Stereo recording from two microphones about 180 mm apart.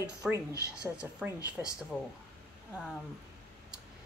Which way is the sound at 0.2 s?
5° right (ahead or behind).